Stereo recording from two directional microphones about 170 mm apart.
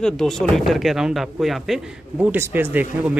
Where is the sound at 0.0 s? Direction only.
5° left (ahead or behind).